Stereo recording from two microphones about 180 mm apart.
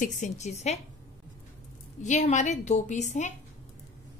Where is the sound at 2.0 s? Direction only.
40° left (ahead or behind).